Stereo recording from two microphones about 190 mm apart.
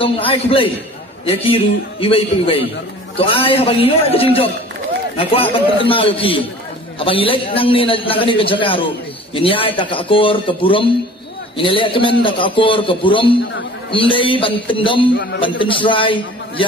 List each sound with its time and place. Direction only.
0.0 s a man's voice: 30° left (ahead or behind)